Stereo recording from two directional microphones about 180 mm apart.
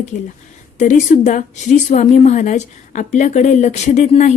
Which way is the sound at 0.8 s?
45° left (ahead or behind).